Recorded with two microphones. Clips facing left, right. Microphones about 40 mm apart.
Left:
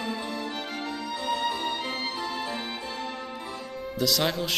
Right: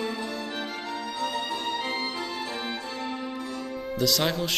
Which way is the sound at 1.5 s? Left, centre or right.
Centre.